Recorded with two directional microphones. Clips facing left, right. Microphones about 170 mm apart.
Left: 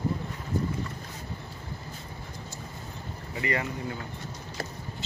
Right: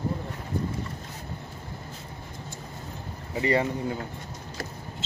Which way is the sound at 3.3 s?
30° right (ahead or behind).